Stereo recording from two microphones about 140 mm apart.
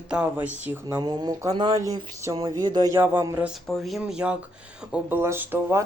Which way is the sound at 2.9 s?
15° right (ahead or behind).